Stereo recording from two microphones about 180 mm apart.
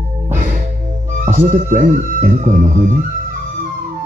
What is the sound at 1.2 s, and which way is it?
Speech, 45° right (ahead or behind).